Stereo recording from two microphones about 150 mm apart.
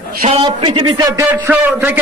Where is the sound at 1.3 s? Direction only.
15° right (ahead or behind).